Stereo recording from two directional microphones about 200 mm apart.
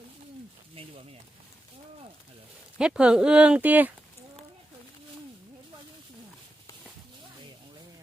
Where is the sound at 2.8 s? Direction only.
5° right (ahead or behind).